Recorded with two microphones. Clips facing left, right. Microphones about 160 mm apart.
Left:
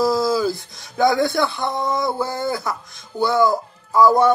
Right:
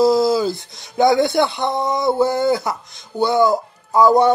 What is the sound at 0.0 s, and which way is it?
A man's voice, 20° right (ahead or behind).